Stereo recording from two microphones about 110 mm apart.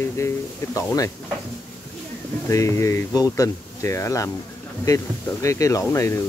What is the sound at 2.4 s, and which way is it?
Speech, 30° left (ahead or behind).